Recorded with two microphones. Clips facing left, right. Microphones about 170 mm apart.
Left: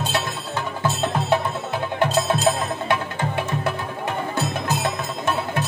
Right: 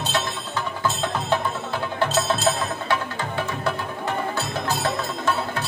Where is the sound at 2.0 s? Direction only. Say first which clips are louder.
Left 2 dB; 15° left (ahead or behind).